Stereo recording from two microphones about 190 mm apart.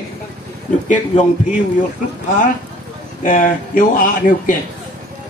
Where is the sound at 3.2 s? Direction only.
45° left (ahead or behind).